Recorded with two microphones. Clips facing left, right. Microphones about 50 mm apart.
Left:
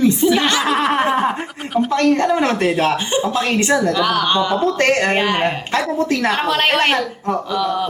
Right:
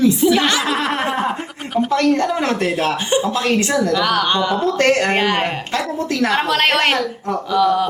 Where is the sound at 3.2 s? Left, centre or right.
Centre.